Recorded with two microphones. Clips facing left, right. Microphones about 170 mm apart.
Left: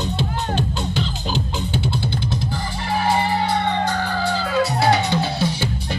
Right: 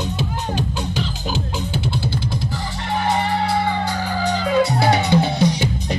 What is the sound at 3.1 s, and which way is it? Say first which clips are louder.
Music: even; centre (ahead or behind).